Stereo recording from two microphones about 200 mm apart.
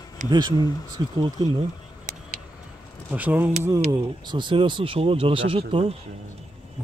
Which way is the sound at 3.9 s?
25° right (ahead or behind).